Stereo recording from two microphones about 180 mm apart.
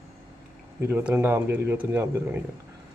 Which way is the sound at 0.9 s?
10° right (ahead or behind).